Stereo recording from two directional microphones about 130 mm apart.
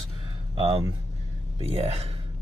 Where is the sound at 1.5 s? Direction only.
50° right (ahead or behind).